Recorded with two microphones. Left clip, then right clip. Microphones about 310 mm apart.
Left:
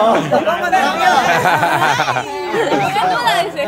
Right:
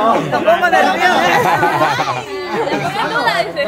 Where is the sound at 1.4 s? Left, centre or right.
Centre.